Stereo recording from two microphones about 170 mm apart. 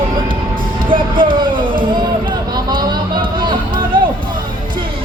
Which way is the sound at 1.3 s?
30° right (ahead or behind).